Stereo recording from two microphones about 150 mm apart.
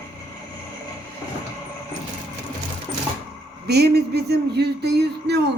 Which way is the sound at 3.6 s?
90° right.